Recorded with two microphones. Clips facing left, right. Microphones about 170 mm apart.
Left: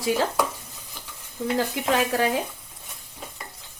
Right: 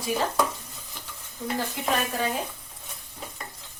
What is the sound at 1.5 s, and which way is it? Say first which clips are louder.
Stir: left 4 dB; 90° left.